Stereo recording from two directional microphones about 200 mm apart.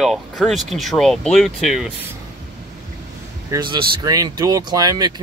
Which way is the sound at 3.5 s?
20° right (ahead or behind).